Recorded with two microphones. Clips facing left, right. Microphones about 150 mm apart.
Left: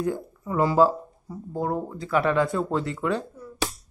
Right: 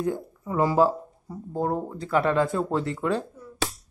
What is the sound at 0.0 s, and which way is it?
Speech, 20° right (ahead or behind).